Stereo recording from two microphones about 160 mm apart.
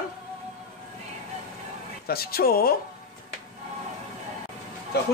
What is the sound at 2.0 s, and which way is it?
Speech, 75° left (ahead or behind).